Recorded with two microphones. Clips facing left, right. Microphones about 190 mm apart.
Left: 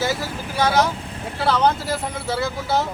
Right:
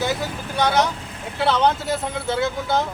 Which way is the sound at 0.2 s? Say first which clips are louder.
Even; 5° left (ahead or behind).